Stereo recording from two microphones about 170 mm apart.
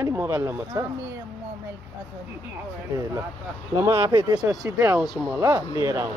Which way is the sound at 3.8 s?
15° right (ahead or behind).